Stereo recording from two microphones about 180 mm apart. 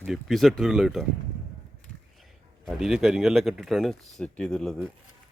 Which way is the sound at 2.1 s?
Centre (ahead or behind).